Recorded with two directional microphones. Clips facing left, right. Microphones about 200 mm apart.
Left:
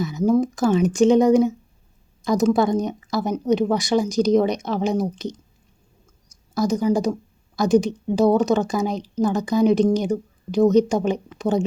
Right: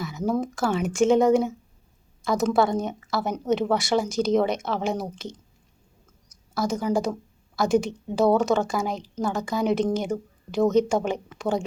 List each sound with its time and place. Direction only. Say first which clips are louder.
0.0 s speech: left 7 dB; 20° left (ahead or behind)
6.2 s a sound: left 5 dB; 15° left (ahead or behind)
6.9 s speech: left 3 dB; 15° left (ahead or behind)